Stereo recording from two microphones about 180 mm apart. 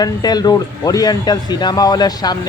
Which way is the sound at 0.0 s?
20° left (ahead or behind).